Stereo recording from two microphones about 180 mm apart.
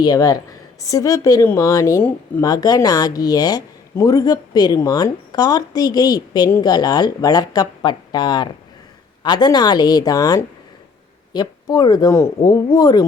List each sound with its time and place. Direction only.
0.0 s a woman's voice: 20° left (ahead or behind)
2.5 s a woman's voice: 20° left (ahead or behind)